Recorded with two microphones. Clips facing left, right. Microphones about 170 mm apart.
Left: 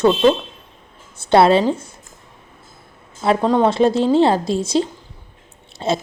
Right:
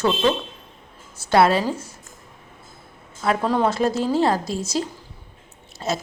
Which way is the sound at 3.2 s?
25° left (ahead or behind).